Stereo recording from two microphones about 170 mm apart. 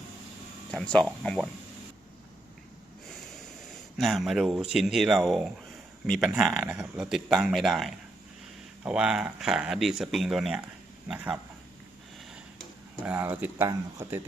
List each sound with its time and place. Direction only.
0.7 s speech: 5° left (ahead or behind)
3.6 s speech: centre (ahead or behind)
13.1 s speech: 10° right (ahead or behind)